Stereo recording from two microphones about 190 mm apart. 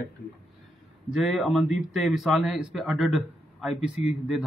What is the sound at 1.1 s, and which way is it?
A man's voice, centre (ahead or behind).